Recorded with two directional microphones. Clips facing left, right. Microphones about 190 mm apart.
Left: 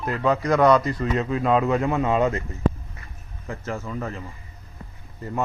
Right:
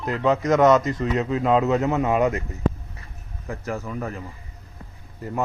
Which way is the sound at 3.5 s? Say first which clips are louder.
Right 1 dB; 15° right (ahead or behind).